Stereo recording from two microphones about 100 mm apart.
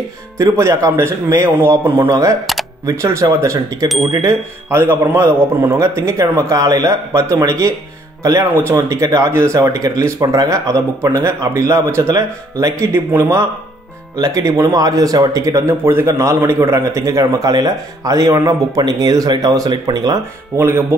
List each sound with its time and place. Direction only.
0.4 s a man's voice: 30° right (ahead or behind)
2.0 s speech: 35° right (ahead or behind)
3.5 s speech: 40° right (ahead or behind)
4.3 s a man's voice: 25° right (ahead or behind)
12.9 s a man's voice: 25° right (ahead or behind); by 20.2 s 40° right (ahead or behind)
20.5 s a man's voice: 25° right (ahead or behind)